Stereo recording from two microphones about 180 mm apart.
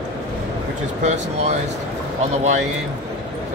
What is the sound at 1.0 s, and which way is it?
Speech, 40° right (ahead or behind).